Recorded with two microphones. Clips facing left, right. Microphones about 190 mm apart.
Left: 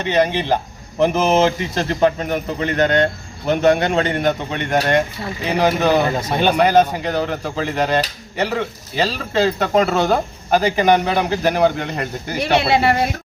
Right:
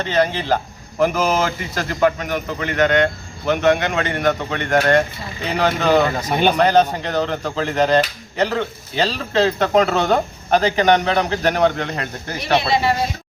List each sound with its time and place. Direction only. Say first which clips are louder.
0.0 s speech: left 2 dB; 15° left (ahead or behind)
12.4 s speech: left 2 dB; 65° left (ahead or behind)